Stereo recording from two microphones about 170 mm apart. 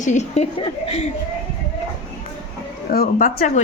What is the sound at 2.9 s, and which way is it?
Speech, 55° left (ahead or behind).